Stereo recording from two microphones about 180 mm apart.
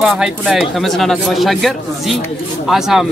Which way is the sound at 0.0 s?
5° right (ahead or behind).